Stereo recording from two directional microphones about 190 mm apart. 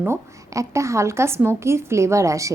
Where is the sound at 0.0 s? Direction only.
15° right (ahead or behind).